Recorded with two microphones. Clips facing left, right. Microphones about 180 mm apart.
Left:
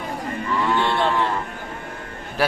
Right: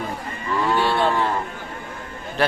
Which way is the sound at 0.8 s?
5° right (ahead or behind).